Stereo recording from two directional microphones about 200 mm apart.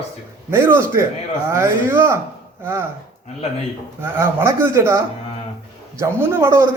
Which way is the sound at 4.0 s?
10° right (ahead or behind).